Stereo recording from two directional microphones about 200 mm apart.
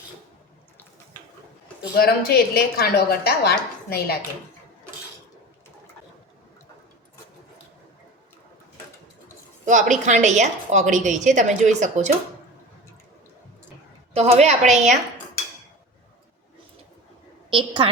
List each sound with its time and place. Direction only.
2.0 s a woman's voice: 50° left (ahead or behind)
9.6 s a woman's voice: 40° right (ahead or behind)
14.1 s a woman's voice: 30° right (ahead or behind)
17.5 s a woman's voice: 25° right (ahead or behind)